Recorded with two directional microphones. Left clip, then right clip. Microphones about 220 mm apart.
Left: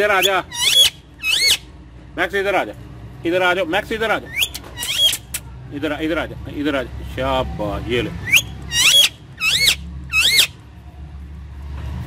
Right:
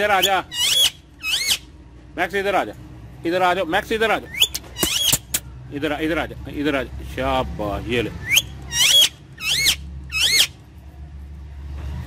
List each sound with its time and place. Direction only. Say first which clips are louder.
0.0 s speech: left 2 dB; 20° right (ahead or behind)
0.5 s a sound: left 4 dB; centre (ahead or behind)
2.1 s speech: left 2 dB; 20° right (ahead or behind)
8.3 s rodents: left 4 dB; 10° left (ahead or behind)